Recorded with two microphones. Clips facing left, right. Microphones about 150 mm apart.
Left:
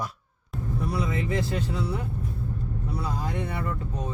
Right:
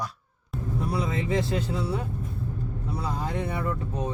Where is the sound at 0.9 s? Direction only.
25° right (ahead or behind).